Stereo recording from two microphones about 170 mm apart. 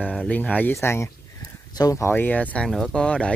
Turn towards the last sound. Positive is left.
turn(degrees=5)  # may be behind; listen again after turning